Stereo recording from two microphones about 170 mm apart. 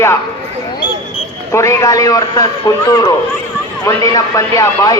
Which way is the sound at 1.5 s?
15° left (ahead or behind).